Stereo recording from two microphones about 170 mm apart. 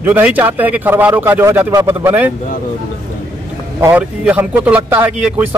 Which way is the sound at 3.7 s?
15° right (ahead or behind).